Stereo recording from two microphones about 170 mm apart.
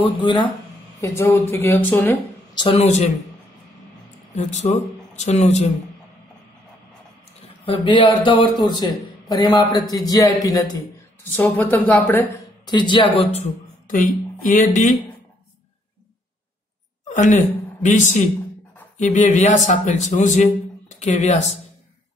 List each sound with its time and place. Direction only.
0.0 s a man's voice: 30° left (ahead or behind)
1.0 s speech: 15° left (ahead or behind)
2.5 s a man's voice: 30° left (ahead or behind)
4.4 s a man's voice: 40° left (ahead or behind)
7.6 s a man's voice: 30° left (ahead or behind)
11.3 s speech: 10° left (ahead or behind)
12.6 s a man's voice: 25° left (ahead or behind)
13.8 s speech: 50° left (ahead or behind)
17.1 s a woman's voice: 50° left (ahead or behind)